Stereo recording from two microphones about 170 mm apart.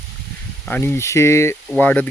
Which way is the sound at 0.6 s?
10° left (ahead or behind).